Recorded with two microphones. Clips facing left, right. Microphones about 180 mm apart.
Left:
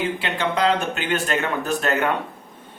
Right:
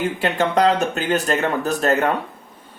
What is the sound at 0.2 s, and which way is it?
Speech, 45° right (ahead or behind).